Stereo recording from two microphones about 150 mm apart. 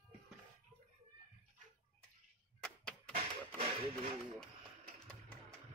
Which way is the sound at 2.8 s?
5° left (ahead or behind).